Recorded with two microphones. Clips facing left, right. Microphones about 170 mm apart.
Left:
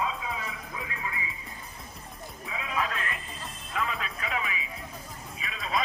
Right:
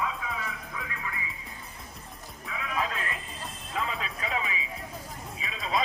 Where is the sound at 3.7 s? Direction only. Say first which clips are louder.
Left 1 dB; 25° right (ahead or behind).